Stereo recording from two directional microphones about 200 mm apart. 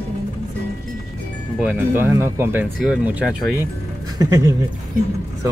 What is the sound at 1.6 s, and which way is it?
Speech, 10° right (ahead or behind).